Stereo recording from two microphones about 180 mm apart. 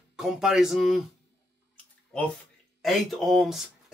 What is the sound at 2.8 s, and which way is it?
Speech, centre (ahead or behind).